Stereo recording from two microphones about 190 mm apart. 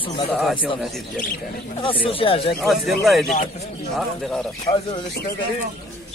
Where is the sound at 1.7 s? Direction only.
30° left (ahead or behind).